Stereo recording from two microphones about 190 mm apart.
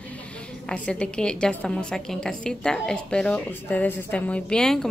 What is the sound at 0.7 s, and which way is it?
A woman's voice, 5° left (ahead or behind).